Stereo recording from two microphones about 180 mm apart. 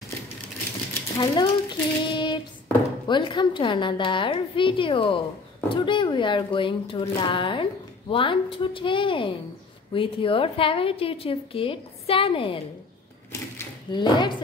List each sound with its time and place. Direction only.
1.1 s child singing: 25° left (ahead or behind)
3.1 s a woman's voice: 25° left (ahead or behind)
13.3 s typewriter: 20° left (ahead or behind)